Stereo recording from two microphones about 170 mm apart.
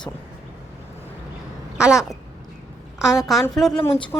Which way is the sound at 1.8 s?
5° right (ahead or behind).